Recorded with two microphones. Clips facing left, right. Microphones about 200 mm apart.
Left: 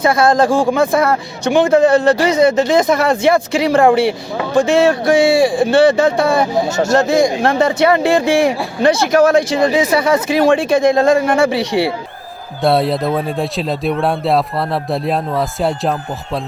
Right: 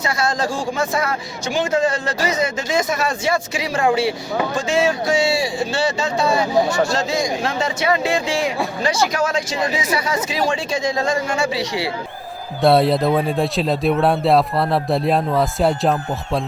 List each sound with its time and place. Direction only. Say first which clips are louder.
0.0 s a man's voice: left 9 dB; 55° left (ahead or behind)
12.6 s speech: even; centre (ahead or behind)